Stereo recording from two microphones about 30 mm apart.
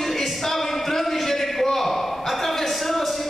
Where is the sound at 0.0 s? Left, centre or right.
Centre.